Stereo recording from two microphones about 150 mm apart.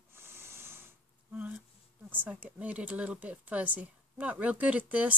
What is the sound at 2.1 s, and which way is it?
Speech, 10° right (ahead or behind).